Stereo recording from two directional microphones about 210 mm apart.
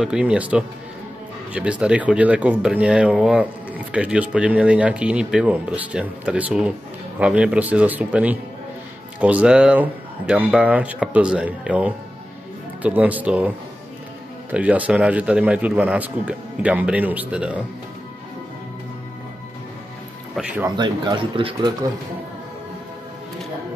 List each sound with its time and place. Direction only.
0.0 s a man's voice: 5° right (ahead or behind)
14.5 s a man's voice: 5° right (ahead or behind)
20.3 s a man's voice: 5° right (ahead or behind)
20.7 s speech: 20° right (ahead or behind)